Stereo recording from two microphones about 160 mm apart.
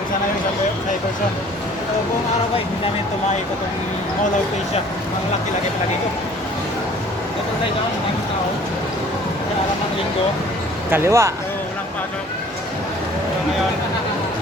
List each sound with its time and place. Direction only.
10.9 s speech: 15° right (ahead or behind)